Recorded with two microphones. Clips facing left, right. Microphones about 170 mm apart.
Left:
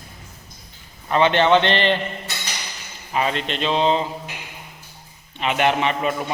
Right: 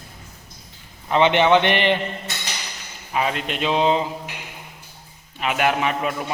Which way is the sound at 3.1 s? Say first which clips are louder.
Left 1 dB; 5° right (ahead or behind).